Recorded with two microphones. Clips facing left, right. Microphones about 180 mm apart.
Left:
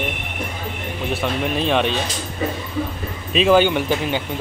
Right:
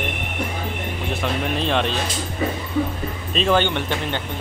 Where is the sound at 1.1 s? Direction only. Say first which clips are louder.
Left 2 dB; 5° left (ahead or behind).